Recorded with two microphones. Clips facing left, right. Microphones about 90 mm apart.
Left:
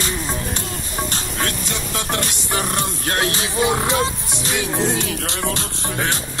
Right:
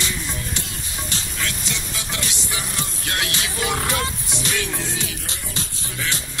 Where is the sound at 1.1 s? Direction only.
50° left (ahead or behind).